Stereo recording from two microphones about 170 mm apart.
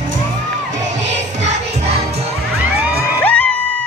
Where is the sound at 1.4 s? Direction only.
40° right (ahead or behind).